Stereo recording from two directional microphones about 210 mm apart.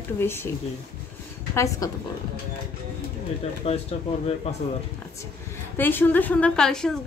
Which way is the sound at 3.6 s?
25° left (ahead or behind).